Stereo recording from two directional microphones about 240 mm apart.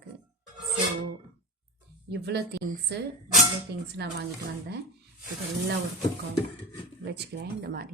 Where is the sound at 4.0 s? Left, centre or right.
Right.